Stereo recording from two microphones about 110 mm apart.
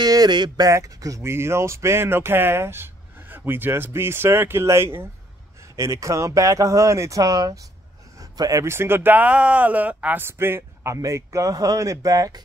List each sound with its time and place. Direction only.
0.0 s speech: 35° right (ahead or behind)